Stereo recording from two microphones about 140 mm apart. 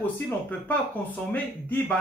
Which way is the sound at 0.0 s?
10° left (ahead or behind).